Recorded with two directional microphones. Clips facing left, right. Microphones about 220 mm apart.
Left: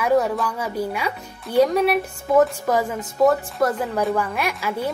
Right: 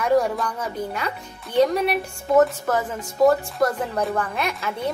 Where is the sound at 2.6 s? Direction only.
15° left (ahead or behind).